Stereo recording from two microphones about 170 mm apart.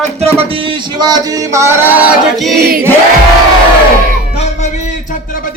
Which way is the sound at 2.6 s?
60° right (ahead or behind).